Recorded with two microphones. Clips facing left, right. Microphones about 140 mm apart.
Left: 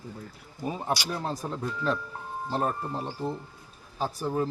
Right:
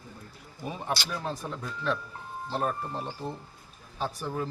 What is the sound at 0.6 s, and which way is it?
Speech, 35° left (ahead or behind).